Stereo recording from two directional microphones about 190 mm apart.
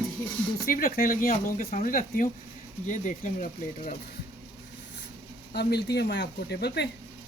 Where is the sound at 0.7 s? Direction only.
50° left (ahead or behind).